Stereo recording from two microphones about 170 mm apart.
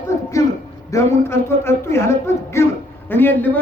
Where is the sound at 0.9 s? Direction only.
15° left (ahead or behind).